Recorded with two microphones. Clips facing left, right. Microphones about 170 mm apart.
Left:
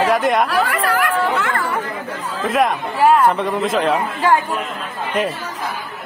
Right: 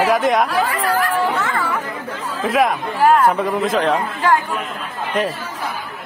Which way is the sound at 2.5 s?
Centre (ahead or behind).